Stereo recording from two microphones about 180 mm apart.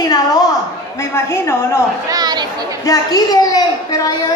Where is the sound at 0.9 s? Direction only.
15° left (ahead or behind).